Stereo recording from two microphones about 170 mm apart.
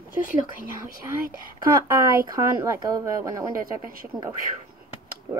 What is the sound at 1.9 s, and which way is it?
Speech, 20° right (ahead or behind).